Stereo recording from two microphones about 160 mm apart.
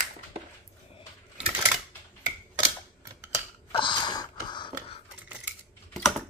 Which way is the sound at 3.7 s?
30° left (ahead or behind).